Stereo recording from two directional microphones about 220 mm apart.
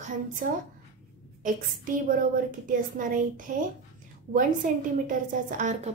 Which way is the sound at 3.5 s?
35° right (ahead or behind).